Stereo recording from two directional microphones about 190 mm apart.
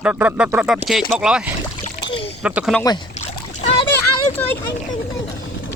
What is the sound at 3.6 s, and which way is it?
Splash, 30° left (ahead or behind).